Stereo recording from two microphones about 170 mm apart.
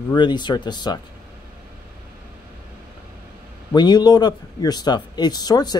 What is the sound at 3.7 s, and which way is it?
A man's voice, 25° left (ahead or behind).